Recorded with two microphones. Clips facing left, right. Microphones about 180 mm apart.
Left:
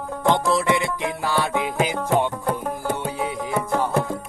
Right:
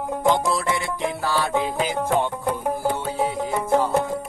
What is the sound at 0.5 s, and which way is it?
Music, 15° left (ahead or behind).